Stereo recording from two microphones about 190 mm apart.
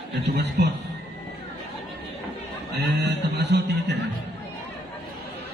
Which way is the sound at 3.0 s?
60° right (ahead or behind).